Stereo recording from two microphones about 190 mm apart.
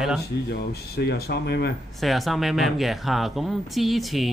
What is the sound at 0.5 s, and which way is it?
Speech, 60° left (ahead or behind).